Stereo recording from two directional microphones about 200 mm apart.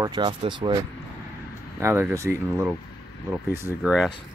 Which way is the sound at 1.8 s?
10° right (ahead or behind).